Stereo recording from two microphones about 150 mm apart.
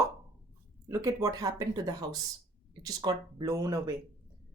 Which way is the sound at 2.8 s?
25° right (ahead or behind).